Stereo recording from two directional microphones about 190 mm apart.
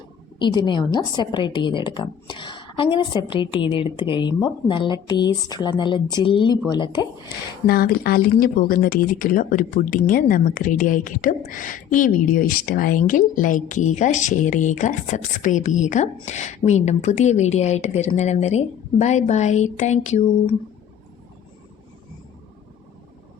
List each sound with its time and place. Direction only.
0.3 s a woman's voice: 25° left (ahead or behind)
7.7 s a woman's voice: 50° left (ahead or behind); by 20.6 s 35° left (ahead or behind)